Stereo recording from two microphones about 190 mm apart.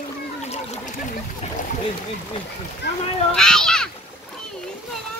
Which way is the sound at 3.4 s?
5° left (ahead or behind).